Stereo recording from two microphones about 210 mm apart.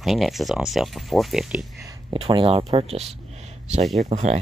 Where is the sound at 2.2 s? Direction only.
25° right (ahead or behind).